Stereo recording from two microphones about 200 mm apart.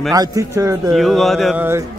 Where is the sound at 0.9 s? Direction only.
Centre (ahead or behind).